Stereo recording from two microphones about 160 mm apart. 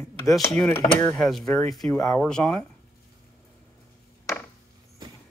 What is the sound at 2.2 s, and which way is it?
Speech, 5° left (ahead or behind).